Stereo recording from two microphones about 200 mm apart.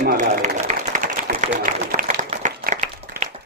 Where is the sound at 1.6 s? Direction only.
45° right (ahead or behind).